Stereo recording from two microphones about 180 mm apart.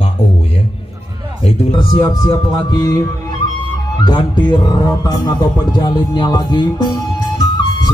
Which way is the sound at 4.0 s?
25° left (ahead or behind).